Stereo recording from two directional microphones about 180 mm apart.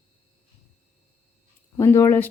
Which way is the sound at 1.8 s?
15° left (ahead or behind).